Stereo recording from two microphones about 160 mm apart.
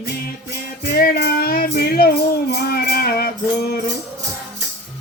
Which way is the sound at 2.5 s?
85° left.